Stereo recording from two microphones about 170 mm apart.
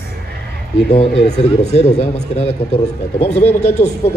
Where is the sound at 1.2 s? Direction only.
40° left (ahead or behind).